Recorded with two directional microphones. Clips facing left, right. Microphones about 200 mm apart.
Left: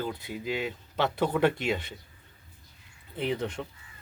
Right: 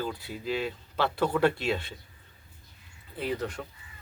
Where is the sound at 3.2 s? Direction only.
20° left (ahead or behind).